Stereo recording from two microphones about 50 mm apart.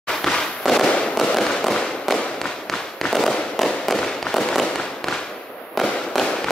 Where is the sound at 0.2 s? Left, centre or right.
Centre.